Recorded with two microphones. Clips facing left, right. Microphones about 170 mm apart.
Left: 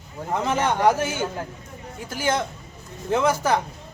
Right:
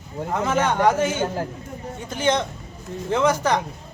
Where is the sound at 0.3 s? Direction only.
10° left (ahead or behind).